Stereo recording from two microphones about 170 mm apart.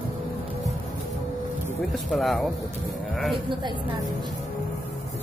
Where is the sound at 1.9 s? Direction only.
Centre (ahead or behind).